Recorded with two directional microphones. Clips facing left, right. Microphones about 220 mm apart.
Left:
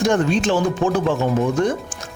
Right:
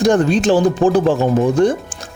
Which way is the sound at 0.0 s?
35° right (ahead or behind).